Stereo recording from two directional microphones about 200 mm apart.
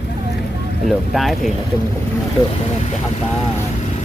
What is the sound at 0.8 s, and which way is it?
Speech, centre (ahead or behind).